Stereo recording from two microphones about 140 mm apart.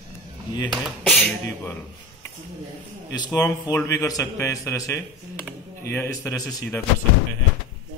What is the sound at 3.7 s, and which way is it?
A man's voice, 20° left (ahead or behind).